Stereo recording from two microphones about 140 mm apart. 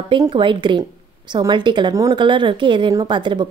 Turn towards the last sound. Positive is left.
turn(degrees=-35)  # may be behind; listen again after turning